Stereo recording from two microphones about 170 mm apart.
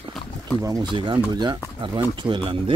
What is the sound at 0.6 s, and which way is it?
Speech, 25° right (ahead or behind).